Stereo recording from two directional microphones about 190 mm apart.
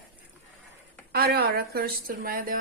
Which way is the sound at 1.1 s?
55° right (ahead or behind).